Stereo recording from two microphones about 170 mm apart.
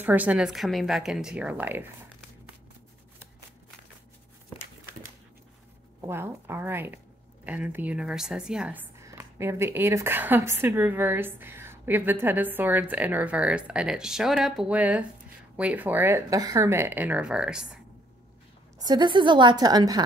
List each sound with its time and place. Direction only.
0.0 s a woman's voice: 10° right (ahead or behind)
5.9 s a woman's voice: 15° right (ahead or behind)
9.0 s a woman's voice: 15° right (ahead or behind)
18.8 s a woman's voice: 25° right (ahead or behind)